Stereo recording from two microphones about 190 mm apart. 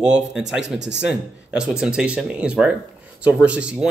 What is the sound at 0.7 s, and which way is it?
Speech, 65° right (ahead or behind).